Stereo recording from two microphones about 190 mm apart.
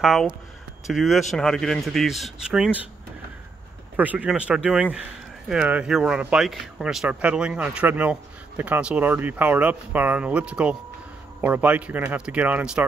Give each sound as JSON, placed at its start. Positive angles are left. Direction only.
{"t": 0.0, "sound": "speech", "side_deg": 0}
{"t": 3.9, "sound": "speech", "side_deg": -10}